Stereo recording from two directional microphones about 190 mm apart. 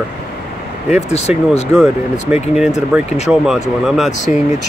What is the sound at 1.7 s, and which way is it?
Speech, centre (ahead or behind).